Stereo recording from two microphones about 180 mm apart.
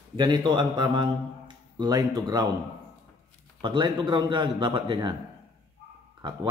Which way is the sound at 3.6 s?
25° right (ahead or behind).